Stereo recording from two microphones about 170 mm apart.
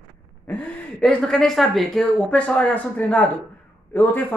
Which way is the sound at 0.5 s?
5° left (ahead or behind).